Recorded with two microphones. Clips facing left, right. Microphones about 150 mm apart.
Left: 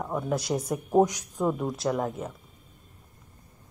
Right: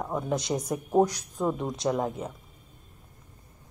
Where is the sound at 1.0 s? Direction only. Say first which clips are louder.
Left 1 dB; 15° left (ahead or behind).